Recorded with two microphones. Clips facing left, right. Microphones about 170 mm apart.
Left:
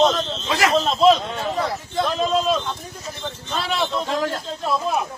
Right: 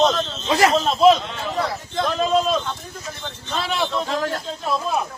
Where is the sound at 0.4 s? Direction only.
25° right (ahead or behind).